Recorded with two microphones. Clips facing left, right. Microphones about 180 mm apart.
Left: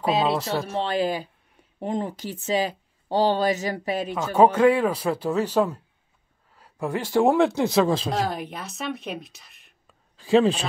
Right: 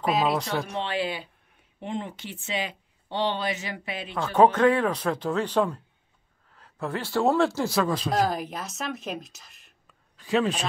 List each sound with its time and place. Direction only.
0.0 s speech: 25° left (ahead or behind)
0.4 s a woman's voice: centre (ahead or behind)
0.8 s speech: 40° left (ahead or behind)
4.1 s speech: 10° left (ahead or behind); by 8.1 s 25° left (ahead or behind)
8.3 s a woman's voice: centre (ahead or behind)
10.1 s speech: 30° left (ahead or behind)